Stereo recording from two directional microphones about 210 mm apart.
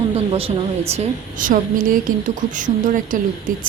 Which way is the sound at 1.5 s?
40° right (ahead or behind).